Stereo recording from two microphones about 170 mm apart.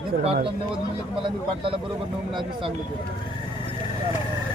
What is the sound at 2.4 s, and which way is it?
Speech, 30° right (ahead or behind).